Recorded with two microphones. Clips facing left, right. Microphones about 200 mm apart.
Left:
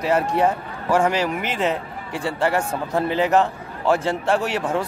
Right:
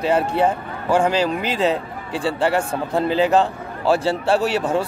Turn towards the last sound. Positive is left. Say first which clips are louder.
# right 3 dB
turn(degrees=-35)  # may be behind; listen again after turning